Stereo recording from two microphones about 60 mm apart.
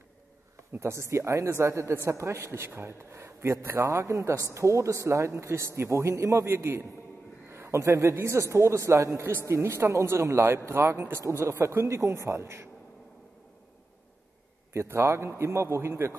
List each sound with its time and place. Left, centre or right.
0.7 s a woman's voice: right
9.3 s a woman's voice: right
14.7 s a woman's voice: right